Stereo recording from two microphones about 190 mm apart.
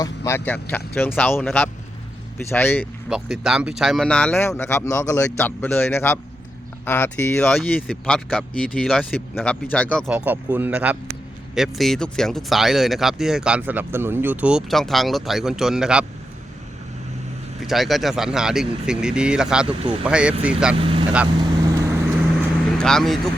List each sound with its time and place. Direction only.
0.0 s speech: 15° left (ahead or behind)
3.1 s speech: 5° right (ahead or behind)
10.1 s speech: 5° right (ahead or behind)
17.6 s speech: centre (ahead or behind)
19.6 s speech: 25° right (ahead or behind)
20.1 s speech: 5° right (ahead or behind)
20.7 s speech: 30° right (ahead or behind)
21.4 s vehicle: 20° right (ahead or behind)
22.8 s speech: 5° left (ahead or behind)